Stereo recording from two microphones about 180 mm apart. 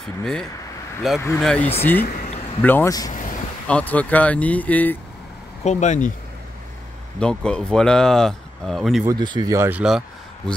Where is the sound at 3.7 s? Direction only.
5° left (ahead or behind).